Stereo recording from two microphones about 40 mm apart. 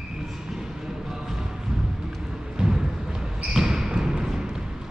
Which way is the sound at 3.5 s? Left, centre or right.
Centre.